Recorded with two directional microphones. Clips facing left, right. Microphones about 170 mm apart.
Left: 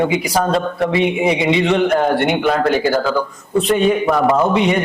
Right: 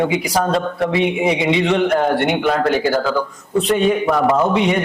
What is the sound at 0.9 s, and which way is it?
A man's voice, 10° left (ahead or behind).